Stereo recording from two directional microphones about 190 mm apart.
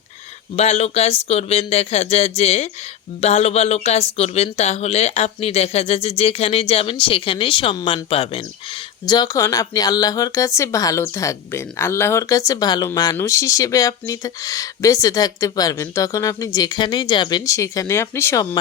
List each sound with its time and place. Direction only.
0.5 s speech: 35° left (ahead or behind); by 18.4 s 15° left (ahead or behind)